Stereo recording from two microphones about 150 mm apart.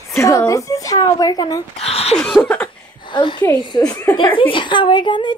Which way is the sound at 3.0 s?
30° left (ahead or behind).